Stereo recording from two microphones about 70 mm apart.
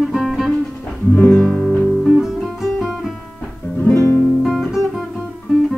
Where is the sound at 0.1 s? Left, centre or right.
Centre.